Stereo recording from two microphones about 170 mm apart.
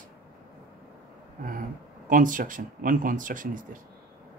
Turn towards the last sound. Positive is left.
turn(degrees=-50)  # may be behind; listen again after turning